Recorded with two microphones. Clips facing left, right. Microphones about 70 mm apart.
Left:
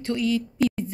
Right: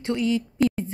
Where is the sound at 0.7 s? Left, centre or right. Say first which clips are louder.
Right 1 dB; right.